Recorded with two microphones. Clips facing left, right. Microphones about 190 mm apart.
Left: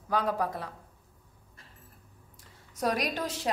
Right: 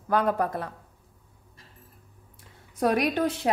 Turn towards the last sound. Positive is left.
turn(degrees=-60)  # may be behind; listen again after turning